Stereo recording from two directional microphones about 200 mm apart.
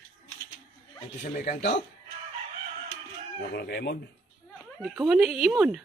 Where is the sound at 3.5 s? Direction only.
55° left (ahead or behind).